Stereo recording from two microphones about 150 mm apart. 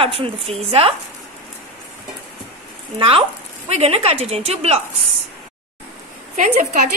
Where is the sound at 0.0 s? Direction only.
40° right (ahead or behind).